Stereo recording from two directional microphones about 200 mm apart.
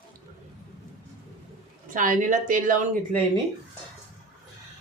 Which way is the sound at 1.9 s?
40° right (ahead or behind).